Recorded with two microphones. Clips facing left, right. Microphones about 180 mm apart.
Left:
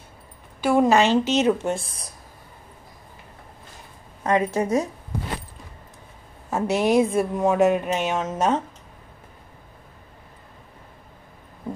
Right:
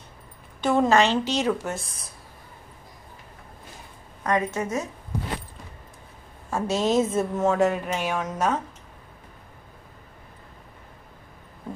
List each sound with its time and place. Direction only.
0.6 s a woman's voice: 10° left (ahead or behind)
4.2 s a woman's voice: 30° left (ahead or behind)
6.5 s speech: 15° left (ahead or behind)